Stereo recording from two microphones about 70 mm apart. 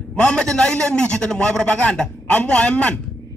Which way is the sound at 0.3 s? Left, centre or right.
Centre.